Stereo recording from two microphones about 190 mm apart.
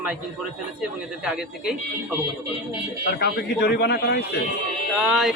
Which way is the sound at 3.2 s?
60° left (ahead or behind).